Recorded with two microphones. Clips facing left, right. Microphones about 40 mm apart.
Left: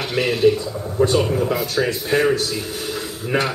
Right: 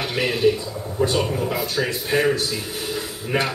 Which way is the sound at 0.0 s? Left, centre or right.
Centre.